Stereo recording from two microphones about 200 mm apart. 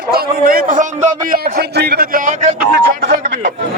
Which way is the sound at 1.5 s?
55° right (ahead or behind).